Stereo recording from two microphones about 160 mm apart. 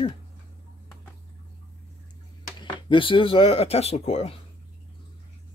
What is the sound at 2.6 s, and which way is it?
Speech, 30° left (ahead or behind).